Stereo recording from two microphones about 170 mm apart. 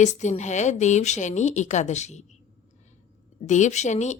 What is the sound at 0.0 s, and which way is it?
A woman's voice, 45° left (ahead or behind).